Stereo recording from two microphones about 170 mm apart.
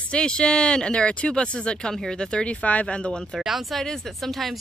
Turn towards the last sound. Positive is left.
turn(degrees=0)  # may be behind; listen again after turning